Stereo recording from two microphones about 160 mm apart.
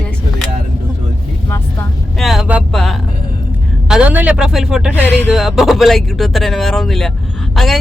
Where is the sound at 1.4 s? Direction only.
15° left (ahead or behind).